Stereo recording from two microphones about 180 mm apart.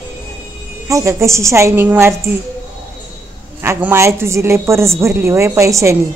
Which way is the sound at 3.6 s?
15° right (ahead or behind).